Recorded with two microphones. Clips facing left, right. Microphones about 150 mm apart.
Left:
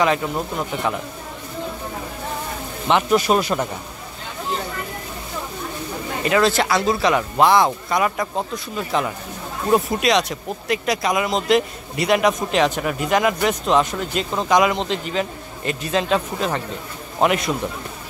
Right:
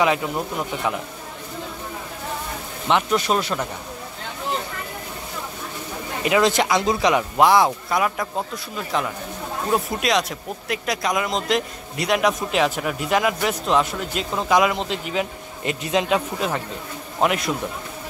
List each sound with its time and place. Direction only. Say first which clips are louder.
0.0 s speech: left 1 dB; 10° right (ahead or behind)
2.9 s speech: left 3 dB; 5° left (ahead or behind)
6.2 s speech: even; 15° right (ahead or behind)
15.6 s speech: even; 20° right (ahead or behind); by 17.6 s centre (ahead or behind)